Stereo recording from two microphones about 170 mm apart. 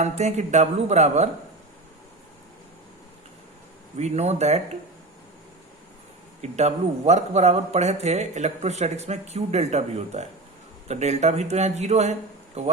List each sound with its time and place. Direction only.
0.0 s a man's voice: 40° right (ahead or behind)
3.9 s a man's voice: 40° right (ahead or behind)
6.4 s a man's voice: 40° right (ahead or behind)